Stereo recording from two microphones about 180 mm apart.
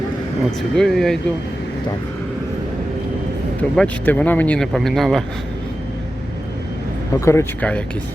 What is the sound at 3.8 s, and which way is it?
Speech, 10° left (ahead or behind).